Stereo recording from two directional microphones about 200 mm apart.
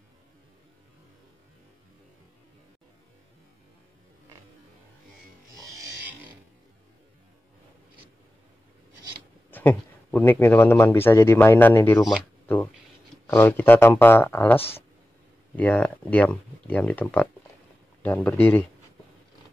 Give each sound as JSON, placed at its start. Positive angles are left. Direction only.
{"t": 5.5, "sound": "pig", "side_deg": -15}
{"t": 9.5, "sound": "speech", "side_deg": 10}
{"t": 13.3, "sound": "speech", "side_deg": 10}